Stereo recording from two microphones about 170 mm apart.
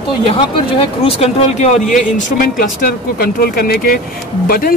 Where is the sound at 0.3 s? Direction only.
35° left (ahead or behind).